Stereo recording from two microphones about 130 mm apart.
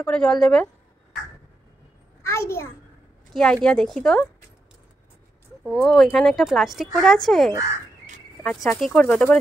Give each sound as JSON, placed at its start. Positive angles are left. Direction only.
{"t": 0.0, "sound": "speech", "side_deg": 5}
{"t": 2.2, "sound": "a child's voice", "side_deg": 20}
{"t": 3.3, "sound": "speech", "side_deg": 5}
{"t": 5.6, "sound": "speech", "side_deg": 0}
{"t": 8.6, "sound": "speech", "side_deg": 5}